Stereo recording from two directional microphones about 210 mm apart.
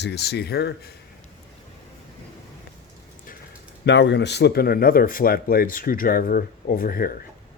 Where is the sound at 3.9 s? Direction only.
55° left (ahead or behind).